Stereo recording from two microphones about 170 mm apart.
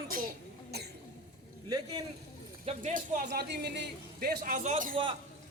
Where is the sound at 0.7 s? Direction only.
70° right (ahead or behind).